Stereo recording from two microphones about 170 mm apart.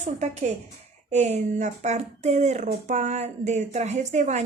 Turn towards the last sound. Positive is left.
turn(degrees=-45)  # may be behind; listen again after turning